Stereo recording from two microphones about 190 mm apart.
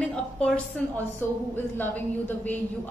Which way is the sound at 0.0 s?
5° left (ahead or behind).